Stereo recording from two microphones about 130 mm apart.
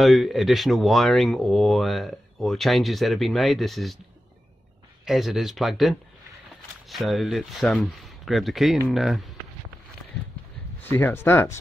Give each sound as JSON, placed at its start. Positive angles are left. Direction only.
{"t": 0.0, "sound": "speech", "side_deg": 0}
{"t": 5.0, "sound": "speech", "side_deg": 0}
{"t": 10.8, "sound": "speech", "side_deg": 15}